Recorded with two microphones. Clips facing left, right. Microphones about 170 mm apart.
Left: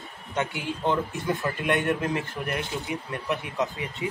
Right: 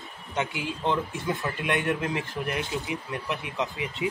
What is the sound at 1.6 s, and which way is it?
Speech, 50° left (ahead or behind).